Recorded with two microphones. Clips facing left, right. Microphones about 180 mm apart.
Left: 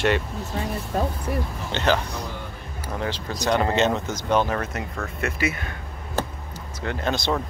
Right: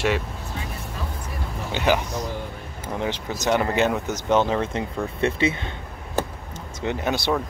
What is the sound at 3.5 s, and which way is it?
Speech, 15° right (ahead or behind).